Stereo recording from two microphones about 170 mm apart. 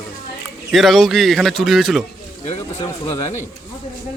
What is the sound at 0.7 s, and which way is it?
A man's voice, centre (ahead or behind).